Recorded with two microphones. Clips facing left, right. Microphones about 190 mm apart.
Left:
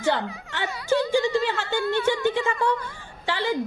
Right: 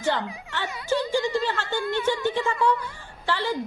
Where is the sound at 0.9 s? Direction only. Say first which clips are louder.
Left 3 dB; 15° right (ahead or behind).